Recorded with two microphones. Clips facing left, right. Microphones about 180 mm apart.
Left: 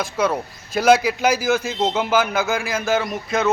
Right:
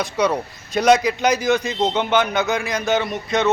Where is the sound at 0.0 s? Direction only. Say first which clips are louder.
Right 1 dB; centre (ahead or behind).